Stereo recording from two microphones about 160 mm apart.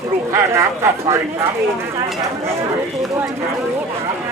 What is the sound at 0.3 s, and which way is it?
Speech, 15° right (ahead or behind).